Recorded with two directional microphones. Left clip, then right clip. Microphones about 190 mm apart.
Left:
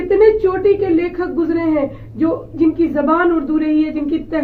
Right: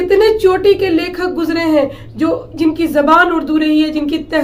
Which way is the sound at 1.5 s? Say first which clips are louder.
Right 7 dB; 40° right (ahead or behind).